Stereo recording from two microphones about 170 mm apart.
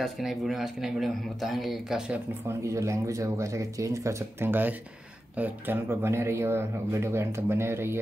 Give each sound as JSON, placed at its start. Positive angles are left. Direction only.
{"t": 0.0, "sound": "speech", "side_deg": 0}
{"t": 2.6, "sound": "speech", "side_deg": -20}